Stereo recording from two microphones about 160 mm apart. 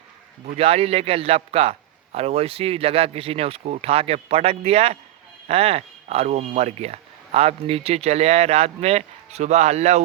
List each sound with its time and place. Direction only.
0.5 s speech: 40° right (ahead or behind)